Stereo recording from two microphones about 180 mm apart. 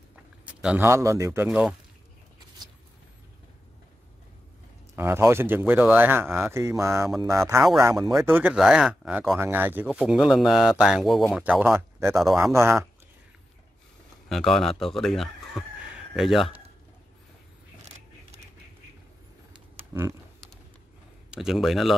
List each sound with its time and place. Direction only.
0.1 s speech: 5° right (ahead or behind)
4.9 s speech: 15° right (ahead or behind)
9.4 s speech: 10° right (ahead or behind)
12.2 s speech: centre (ahead or behind)
12.5 s speech: 15° right (ahead or behind)
14.3 s speech: centre (ahead or behind)
19.9 s speech: 15° right (ahead or behind)
21.3 s speech: centre (ahead or behind)